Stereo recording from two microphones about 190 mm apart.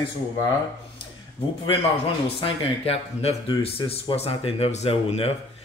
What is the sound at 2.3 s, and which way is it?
Speech, 30° left (ahead or behind).